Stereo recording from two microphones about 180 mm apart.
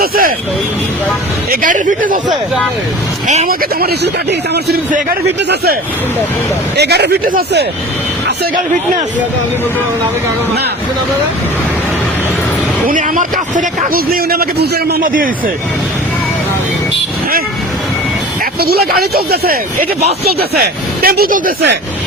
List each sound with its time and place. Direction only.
0.0 s a man's voice: 55° right (ahead or behind)
1.5 s a man's voice: 50° right (ahead or behind)
3.2 s speech: 45° right (ahead or behind)
6.7 s speech: 65° right (ahead or behind)
12.9 s a man's voice: 45° right (ahead or behind)
18.6 s speech: 60° right (ahead or behind)
21.0 s a man's voice: 55° right (ahead or behind)